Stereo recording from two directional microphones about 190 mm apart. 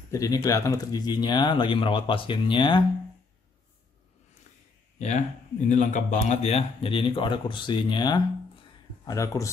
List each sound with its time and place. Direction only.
0.1 s speech: 15° left (ahead or behind)
4.9 s a sound: 40° left (ahead or behind)
5.7 s speech: 40° left (ahead or behind); by 9.5 s 15° left (ahead or behind)